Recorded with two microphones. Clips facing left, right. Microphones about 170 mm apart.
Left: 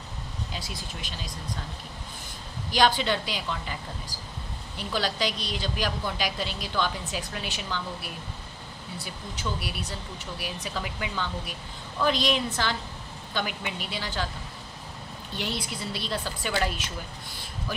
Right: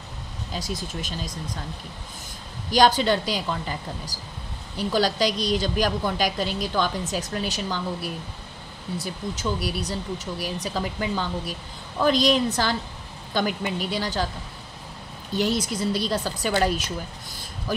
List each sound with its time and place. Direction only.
0.6 s a woman's voice: 40° right (ahead or behind)
2.7 s a woman's voice: 40° right (ahead or behind)
15.3 s speech: 40° right (ahead or behind)